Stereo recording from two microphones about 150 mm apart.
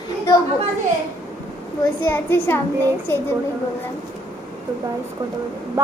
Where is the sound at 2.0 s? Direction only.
15° left (ahead or behind).